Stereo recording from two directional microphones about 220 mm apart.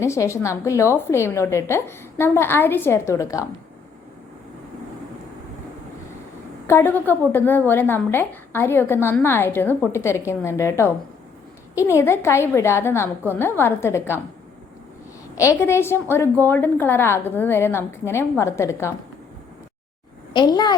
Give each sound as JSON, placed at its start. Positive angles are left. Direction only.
{"t": 0.0, "sound": "a woman's voice", "side_deg": 15}
{"t": 6.7, "sound": "a woman's voice", "side_deg": 10}
{"t": 15.4, "sound": "a woman's voice", "side_deg": 10}
{"t": 20.3, "sound": "a child's voice", "side_deg": 20}